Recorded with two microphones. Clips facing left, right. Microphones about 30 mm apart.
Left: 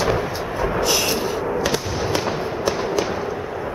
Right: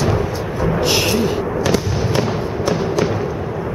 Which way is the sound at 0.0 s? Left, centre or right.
Centre.